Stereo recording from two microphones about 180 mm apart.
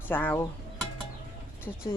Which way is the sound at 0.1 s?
10° left (ahead or behind).